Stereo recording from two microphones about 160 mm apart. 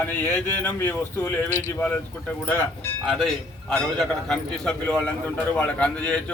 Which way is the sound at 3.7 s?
5° left (ahead or behind).